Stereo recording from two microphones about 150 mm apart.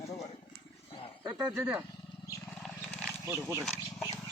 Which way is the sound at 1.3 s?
20° right (ahead or behind).